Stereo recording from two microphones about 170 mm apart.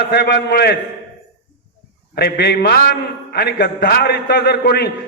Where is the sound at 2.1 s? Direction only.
70° left (ahead or behind).